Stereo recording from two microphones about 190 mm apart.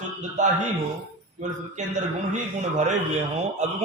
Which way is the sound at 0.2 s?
40° right (ahead or behind).